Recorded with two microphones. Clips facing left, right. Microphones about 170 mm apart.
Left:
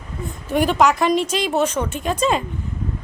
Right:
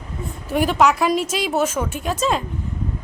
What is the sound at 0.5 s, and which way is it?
A woman's voice, centre (ahead or behind).